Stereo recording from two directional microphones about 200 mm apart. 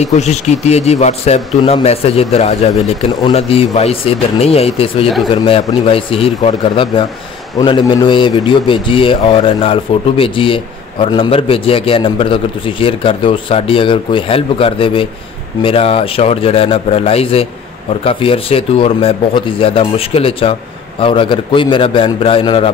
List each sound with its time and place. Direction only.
0.0 s a man's voice: 35° left (ahead or behind)